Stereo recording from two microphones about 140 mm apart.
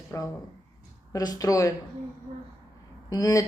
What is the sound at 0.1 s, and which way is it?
Speech, 20° left (ahead or behind).